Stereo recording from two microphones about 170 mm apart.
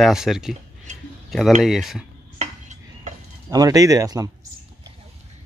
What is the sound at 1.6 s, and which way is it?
Speech, centre (ahead or behind).